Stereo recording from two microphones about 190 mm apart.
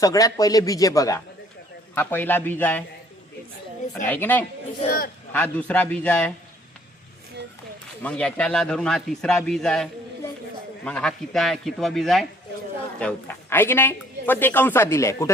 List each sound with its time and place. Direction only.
0.0 s a man's voice: 20° left (ahead or behind)
4.0 s a man's voice: 10° left (ahead or behind)
8.0 s a man's voice: 5° left (ahead or behind)